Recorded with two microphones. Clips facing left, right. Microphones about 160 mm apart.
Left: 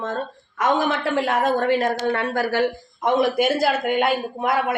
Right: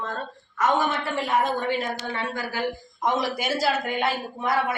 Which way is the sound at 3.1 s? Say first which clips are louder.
Left 7 dB; 55° left (ahead or behind).